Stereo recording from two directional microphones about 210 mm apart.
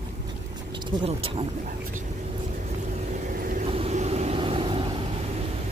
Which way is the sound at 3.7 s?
30° right (ahead or behind).